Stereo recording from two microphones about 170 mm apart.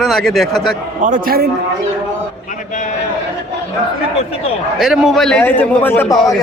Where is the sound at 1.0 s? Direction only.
55° right (ahead or behind).